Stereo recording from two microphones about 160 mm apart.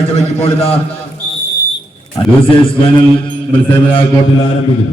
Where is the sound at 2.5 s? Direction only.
30° left (ahead or behind).